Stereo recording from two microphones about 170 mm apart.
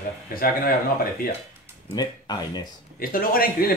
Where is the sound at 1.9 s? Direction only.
25° left (ahead or behind).